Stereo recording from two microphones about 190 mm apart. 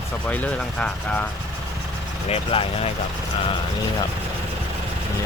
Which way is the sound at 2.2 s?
30° left (ahead or behind).